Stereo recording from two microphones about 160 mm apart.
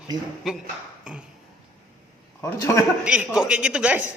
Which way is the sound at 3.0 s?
5° right (ahead or behind).